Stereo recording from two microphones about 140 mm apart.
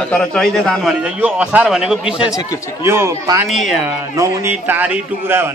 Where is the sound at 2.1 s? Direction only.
25° left (ahead or behind).